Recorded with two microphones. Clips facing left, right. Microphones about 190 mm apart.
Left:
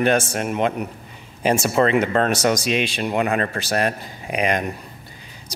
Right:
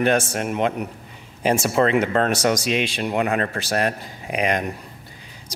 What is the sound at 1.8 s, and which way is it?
Speech, 15° left (ahead or behind).